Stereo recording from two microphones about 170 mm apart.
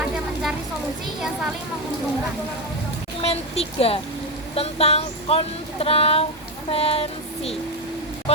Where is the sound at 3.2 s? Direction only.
35° left (ahead or behind).